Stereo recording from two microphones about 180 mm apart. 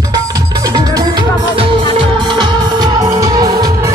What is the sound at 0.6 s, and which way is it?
Music, 20° right (ahead or behind).